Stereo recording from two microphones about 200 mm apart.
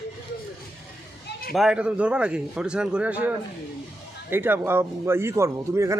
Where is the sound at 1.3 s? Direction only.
50° left (ahead or behind).